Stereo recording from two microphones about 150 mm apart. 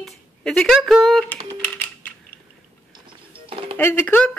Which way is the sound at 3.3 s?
35° right (ahead or behind).